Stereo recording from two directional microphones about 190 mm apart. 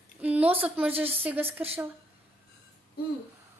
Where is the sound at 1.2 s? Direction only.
10° right (ahead or behind).